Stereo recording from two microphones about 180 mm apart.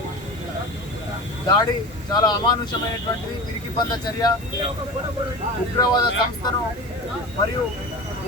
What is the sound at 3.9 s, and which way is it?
Speech, 20° left (ahead or behind).